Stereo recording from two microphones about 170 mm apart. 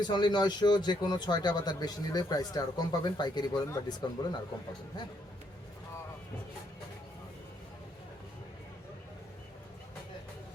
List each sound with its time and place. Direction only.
0.0 s a man's voice: 25° left (ahead or behind)